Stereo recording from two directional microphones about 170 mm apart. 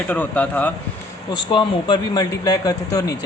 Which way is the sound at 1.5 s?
25° left (ahead or behind).